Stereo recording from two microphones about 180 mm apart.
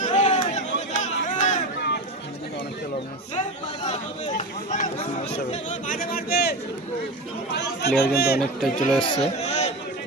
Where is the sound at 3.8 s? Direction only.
40° left (ahead or behind); by 6.6 s 65° left (ahead or behind).